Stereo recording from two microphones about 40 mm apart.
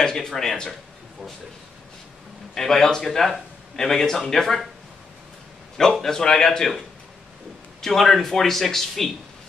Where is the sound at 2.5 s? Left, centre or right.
Centre.